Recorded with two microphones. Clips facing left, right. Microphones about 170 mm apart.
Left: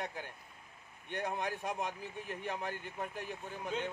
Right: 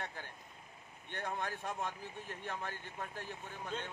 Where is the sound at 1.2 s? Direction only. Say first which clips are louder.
Left 3 dB; 15° left (ahead or behind).